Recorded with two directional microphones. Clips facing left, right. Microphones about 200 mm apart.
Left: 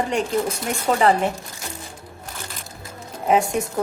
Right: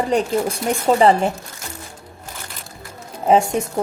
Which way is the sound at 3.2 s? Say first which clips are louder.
Right 3 dB; 30° right (ahead or behind).